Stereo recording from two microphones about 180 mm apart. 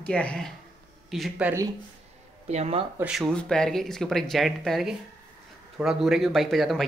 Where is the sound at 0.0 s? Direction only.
5° left (ahead or behind).